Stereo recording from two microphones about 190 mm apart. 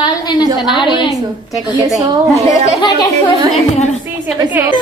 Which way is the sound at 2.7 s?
20° left (ahead or behind).